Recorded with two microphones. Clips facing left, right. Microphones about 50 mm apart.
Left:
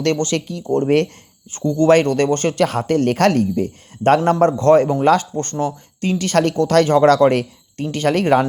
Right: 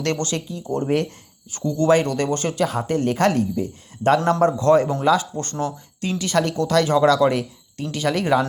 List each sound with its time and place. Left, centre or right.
0.0 s a man's voice: left
0.3 s speech: left
1.5 s a man's voice: left
1.9 s a man's voice: left